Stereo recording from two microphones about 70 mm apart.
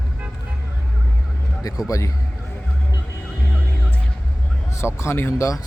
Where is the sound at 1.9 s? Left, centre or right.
Left.